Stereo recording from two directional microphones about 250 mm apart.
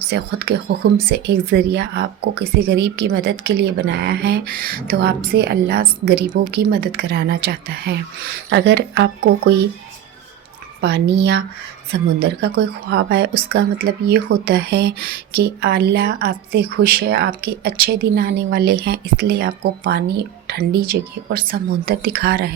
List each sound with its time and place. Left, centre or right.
0.1 s speech: right
10.8 s speech: right